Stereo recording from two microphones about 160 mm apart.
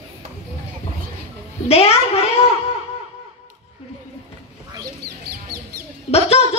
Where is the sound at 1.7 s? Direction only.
40° left (ahead or behind).